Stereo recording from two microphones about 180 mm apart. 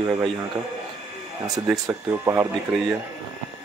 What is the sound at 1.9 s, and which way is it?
Speech, 15° right (ahead or behind).